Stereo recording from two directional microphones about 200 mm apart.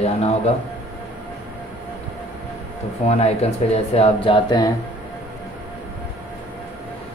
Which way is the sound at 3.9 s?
30° left (ahead or behind).